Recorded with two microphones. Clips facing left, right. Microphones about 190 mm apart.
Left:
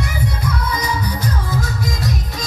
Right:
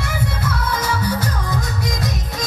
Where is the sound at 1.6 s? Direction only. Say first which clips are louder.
Left 1 dB; 20° right (ahead or behind).